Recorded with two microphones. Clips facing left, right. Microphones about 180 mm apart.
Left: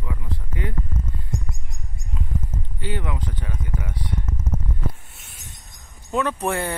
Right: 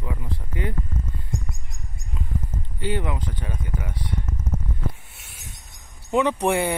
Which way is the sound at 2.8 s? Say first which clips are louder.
Right 3 dB; 25° right (ahead or behind).